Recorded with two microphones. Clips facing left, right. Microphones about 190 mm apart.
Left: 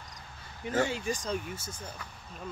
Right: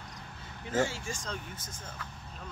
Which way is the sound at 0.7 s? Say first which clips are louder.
Left 2 dB; 15° left (ahead or behind).